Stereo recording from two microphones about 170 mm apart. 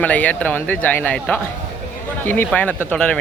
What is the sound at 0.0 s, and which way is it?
Speech, 10° left (ahead or behind).